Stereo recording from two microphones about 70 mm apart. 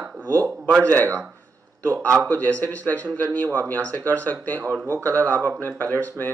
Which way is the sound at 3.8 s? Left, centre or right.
Right.